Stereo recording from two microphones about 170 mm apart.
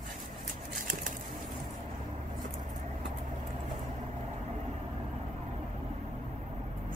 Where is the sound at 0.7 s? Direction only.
50° right (ahead or behind).